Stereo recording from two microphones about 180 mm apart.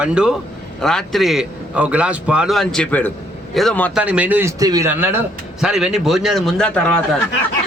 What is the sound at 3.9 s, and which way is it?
A man's voice, 5° right (ahead or behind).